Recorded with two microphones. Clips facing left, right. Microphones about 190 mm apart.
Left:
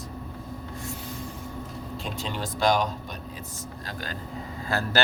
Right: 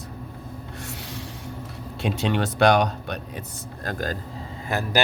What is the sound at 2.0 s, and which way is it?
Speech, 75° right (ahead or behind).